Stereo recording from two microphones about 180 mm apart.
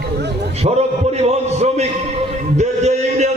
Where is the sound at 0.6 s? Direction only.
35° right (ahead or behind).